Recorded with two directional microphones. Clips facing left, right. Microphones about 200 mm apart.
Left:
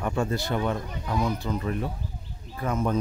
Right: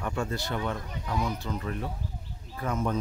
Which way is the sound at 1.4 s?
15° left (ahead or behind).